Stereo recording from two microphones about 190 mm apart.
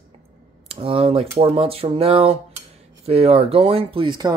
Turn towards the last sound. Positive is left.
turn(degrees=-25)  # may be behind; listen again after turning